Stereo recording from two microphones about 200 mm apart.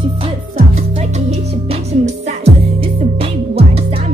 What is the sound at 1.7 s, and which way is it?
Music, 35° right (ahead or behind).